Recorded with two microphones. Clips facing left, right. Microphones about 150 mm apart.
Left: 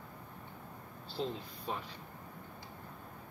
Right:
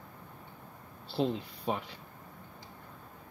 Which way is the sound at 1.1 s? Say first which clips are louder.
Right 7 dB; 75° right (ahead or behind).